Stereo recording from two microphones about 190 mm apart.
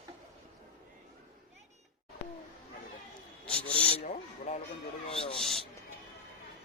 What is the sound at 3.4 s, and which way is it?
Rub, 5° left (ahead or behind).